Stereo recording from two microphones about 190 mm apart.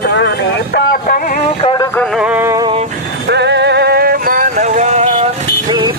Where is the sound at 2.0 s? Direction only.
5° right (ahead or behind).